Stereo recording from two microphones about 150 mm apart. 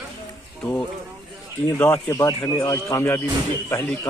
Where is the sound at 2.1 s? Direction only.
20° left (ahead or behind).